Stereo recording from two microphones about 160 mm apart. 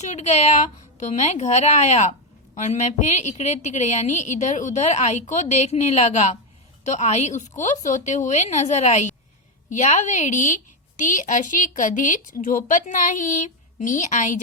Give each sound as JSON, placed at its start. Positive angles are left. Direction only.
{"t": 0.0, "sound": "a woman's voice", "side_deg": 45}